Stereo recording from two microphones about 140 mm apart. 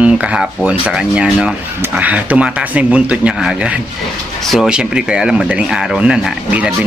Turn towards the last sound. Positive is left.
turn(degrees=-5)  # may be behind; listen again after turning